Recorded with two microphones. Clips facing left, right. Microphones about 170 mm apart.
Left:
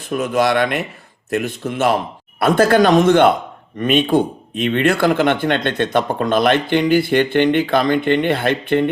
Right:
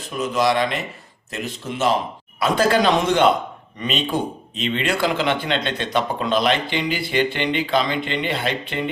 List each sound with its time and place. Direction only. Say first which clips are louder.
0.1 s speech: left 3 dB; 55° left (ahead or behind)